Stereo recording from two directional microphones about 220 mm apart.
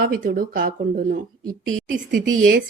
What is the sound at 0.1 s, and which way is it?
Speech, 40° right (ahead or behind).